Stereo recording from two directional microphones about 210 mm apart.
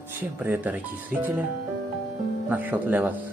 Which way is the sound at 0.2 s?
10° right (ahead or behind).